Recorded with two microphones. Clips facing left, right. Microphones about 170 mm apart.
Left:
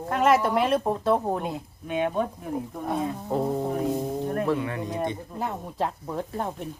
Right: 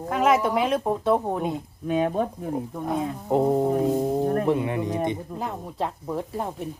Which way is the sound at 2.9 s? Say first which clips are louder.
Right 3 dB; 20° right (ahead or behind).